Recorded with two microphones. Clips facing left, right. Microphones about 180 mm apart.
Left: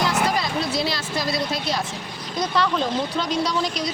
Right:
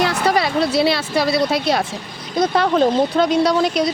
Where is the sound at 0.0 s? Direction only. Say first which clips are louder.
Right 5 dB; 70° right (ahead or behind).